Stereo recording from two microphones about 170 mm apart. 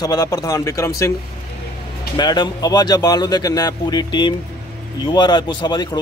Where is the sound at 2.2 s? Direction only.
25° left (ahead or behind).